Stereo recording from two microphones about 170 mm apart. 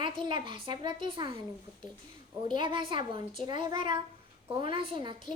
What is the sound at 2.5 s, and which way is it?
A woman's voice, 30° right (ahead or behind).